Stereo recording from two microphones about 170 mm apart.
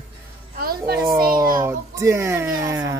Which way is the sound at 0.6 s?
60° right (ahead or behind).